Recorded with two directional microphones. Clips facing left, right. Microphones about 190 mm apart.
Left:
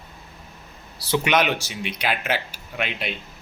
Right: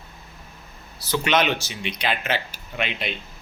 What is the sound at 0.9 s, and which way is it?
Speech, 30° left (ahead or behind).